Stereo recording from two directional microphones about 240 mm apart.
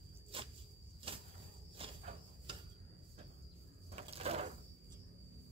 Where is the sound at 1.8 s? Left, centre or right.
Right.